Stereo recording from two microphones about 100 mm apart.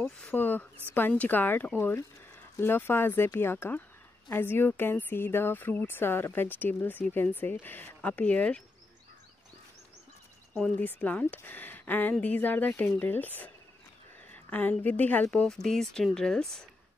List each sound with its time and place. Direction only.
0.3 s speech: 15° left (ahead or behind)
10.8 s a woman's voice: 15° left (ahead or behind)
15.3 s speech: 5° left (ahead or behind)